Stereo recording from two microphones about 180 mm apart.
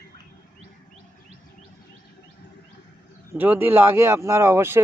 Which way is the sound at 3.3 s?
10° right (ahead or behind).